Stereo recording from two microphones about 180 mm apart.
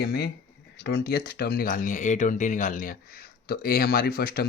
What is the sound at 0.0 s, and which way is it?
Speech, 60° left (ahead or behind).